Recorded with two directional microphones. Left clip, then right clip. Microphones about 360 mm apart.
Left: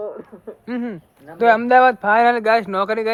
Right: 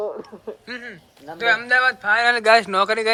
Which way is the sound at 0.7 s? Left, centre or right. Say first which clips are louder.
Left 5 dB; centre.